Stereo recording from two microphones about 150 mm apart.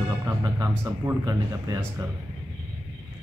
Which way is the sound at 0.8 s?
20° right (ahead or behind).